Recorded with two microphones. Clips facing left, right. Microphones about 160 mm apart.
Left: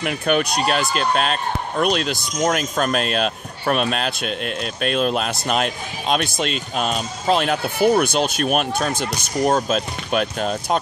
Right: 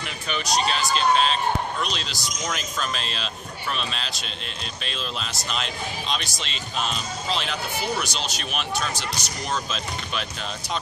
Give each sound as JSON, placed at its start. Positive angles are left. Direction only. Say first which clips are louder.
{"t": 0.0, "sound": "speech", "louder": "left 11 dB", "side_deg": 60}